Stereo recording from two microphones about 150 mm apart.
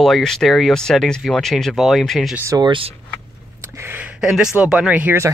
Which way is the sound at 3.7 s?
15° right (ahead or behind).